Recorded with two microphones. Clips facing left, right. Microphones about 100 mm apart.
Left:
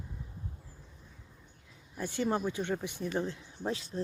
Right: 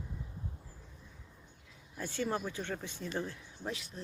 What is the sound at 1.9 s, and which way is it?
Speech, 15° left (ahead or behind).